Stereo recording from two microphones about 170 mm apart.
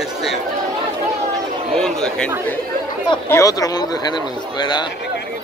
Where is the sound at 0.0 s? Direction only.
Centre (ahead or behind).